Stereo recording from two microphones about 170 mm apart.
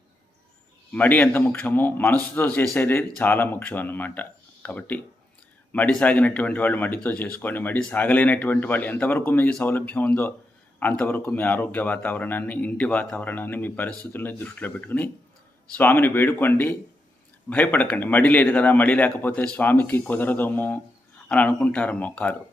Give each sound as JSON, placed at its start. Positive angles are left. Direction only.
{"t": 0.9, "sound": "speech", "side_deg": 10}